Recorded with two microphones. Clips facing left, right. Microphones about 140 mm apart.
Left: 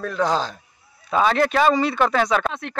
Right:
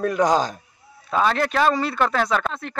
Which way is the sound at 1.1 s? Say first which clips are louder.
Left 2 dB; centre (ahead or behind).